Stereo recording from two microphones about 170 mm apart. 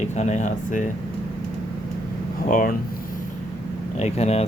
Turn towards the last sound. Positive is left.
turn(degrees=40)  # may be behind; listen again after turning